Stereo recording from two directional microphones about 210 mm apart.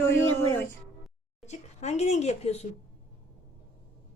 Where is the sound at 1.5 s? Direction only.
30° left (ahead or behind).